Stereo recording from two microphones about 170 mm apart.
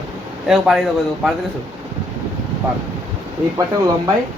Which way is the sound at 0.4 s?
Centre (ahead or behind).